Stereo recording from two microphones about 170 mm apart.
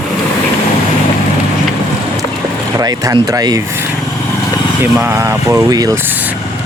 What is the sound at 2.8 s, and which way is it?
Speech, 20° right (ahead or behind).